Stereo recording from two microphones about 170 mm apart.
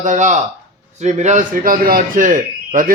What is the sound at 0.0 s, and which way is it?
A man's voice, 45° right (ahead or behind).